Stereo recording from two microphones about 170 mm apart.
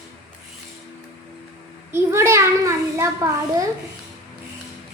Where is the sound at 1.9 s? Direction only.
15° right (ahead or behind).